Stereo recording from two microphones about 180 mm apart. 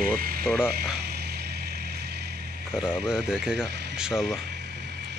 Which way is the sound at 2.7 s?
5° right (ahead or behind).